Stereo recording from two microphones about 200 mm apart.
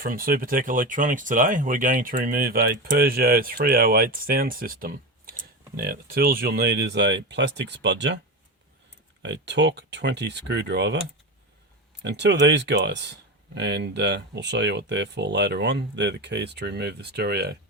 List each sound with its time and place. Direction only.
0.0 s speech: 45° right (ahead or behind); by 8.2 s 60° right (ahead or behind)
9.2 s speech: 60° right (ahead or behind)
12.0 s speech: 60° right (ahead or behind)